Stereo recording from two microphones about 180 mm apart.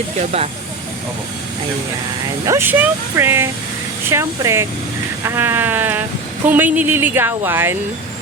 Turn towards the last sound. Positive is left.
turn(degrees=-15)  # may be behind; listen again after turning